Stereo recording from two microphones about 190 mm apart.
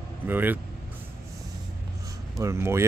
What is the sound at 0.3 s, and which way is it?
Speech, 10° right (ahead or behind).